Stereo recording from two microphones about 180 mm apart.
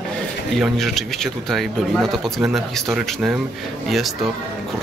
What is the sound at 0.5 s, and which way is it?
Speech, centre (ahead or behind).